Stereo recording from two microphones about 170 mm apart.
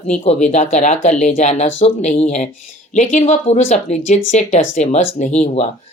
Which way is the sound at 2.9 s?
50° left (ahead or behind).